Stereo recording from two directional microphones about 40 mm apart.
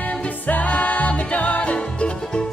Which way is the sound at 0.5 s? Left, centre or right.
Left.